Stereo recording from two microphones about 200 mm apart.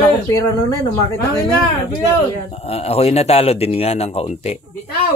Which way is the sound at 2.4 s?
30° left (ahead or behind).